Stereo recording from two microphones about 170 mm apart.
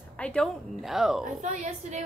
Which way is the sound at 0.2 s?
5° left (ahead or behind).